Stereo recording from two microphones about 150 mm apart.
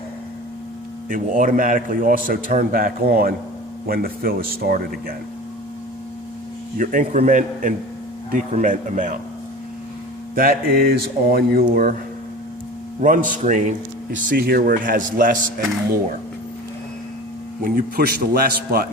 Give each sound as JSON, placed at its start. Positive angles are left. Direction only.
{"t": 1.1, "sound": "a man's voice", "side_deg": -65}
{"t": 6.7, "sound": "a man's voice", "side_deg": -60}
{"t": 10.3, "sound": "speech", "side_deg": -75}
{"t": 11.7, "sound": "a man's voice", "side_deg": -65}
{"t": 13.0, "sound": "a man's voice", "side_deg": -60}
{"t": 14.3, "sound": "a man's voice", "side_deg": -90}
{"t": 17.6, "sound": "speech", "side_deg": -70}